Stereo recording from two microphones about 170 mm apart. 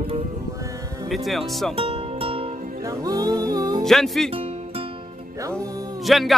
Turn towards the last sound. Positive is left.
turn(degrees=0)  # may be behind; listen again after turning